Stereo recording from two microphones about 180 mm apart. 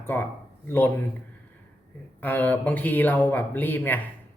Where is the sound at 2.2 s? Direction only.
10° left (ahead or behind).